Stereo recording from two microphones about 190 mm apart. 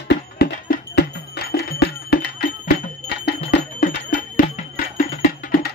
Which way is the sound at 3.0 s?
60° left (ahead or behind).